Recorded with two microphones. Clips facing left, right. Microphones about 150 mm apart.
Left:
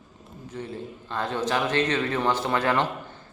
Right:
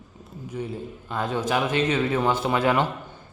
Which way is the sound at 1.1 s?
10° right (ahead or behind).